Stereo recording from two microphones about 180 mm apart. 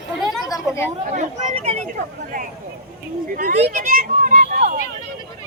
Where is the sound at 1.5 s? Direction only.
40° right (ahead or behind).